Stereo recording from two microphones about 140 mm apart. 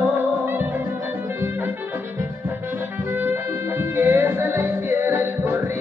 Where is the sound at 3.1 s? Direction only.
15° right (ahead or behind).